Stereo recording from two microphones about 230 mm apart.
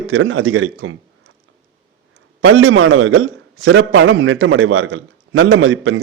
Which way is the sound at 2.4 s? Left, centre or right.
Right.